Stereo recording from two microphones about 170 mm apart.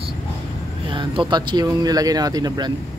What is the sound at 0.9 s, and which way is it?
Speech, 30° right (ahead or behind).